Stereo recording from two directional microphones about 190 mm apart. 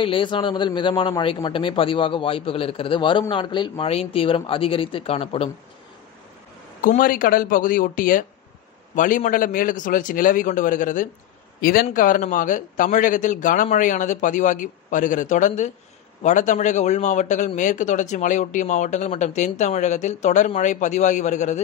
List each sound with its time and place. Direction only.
0.0 s a man's voice: 25° left (ahead or behind)
6.8 s a man's voice: 45° left (ahead or behind)